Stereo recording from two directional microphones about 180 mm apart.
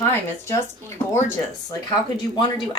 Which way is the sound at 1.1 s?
15° left (ahead or behind).